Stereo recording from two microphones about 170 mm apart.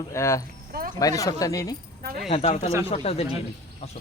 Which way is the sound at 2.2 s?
40° left (ahead or behind).